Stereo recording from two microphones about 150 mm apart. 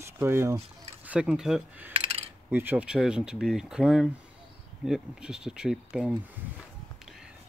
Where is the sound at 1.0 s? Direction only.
5° right (ahead or behind).